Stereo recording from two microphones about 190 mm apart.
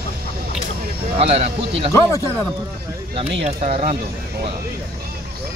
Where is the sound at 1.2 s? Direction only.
35° right (ahead or behind).